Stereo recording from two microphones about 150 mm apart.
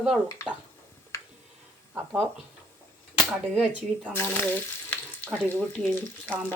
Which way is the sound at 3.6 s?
10° right (ahead or behind).